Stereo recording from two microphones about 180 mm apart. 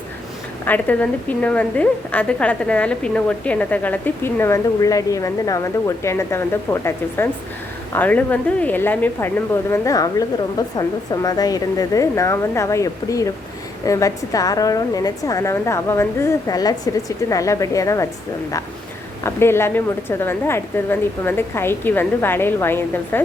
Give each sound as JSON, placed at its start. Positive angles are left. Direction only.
{"t": 0.6, "sound": "a woman's voice", "side_deg": 10}
{"t": 19.2, "sound": "a woman's voice", "side_deg": 15}